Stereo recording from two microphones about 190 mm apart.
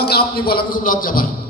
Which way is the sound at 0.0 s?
55° left (ahead or behind).